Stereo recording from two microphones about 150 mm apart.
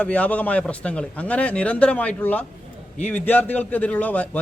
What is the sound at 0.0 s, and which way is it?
A man's voice, 10° left (ahead or behind).